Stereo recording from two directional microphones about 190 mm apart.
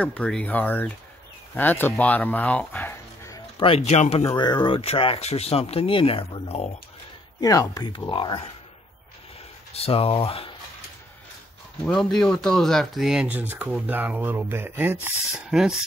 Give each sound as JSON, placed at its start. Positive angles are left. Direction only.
{"t": 0.0, "sound": "speech", "side_deg": 5}
{"t": 3.5, "sound": "speech", "side_deg": 30}
{"t": 4.2, "sound": "speech", "side_deg": 20}
{"t": 7.3, "sound": "speech", "side_deg": 20}
{"t": 9.8, "sound": "speech", "side_deg": 30}
{"t": 11.8, "sound": "speech", "side_deg": 5}